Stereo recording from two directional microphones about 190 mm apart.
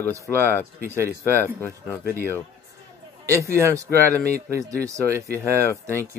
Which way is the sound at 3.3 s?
15° right (ahead or behind).